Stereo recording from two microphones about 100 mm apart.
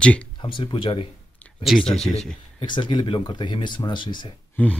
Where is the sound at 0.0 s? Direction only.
10° left (ahead or behind).